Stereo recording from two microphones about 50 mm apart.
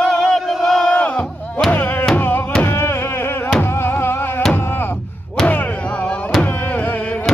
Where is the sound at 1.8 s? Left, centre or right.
Left.